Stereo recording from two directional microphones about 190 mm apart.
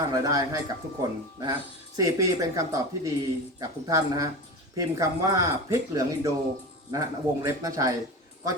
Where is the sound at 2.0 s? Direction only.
20° right (ahead or behind).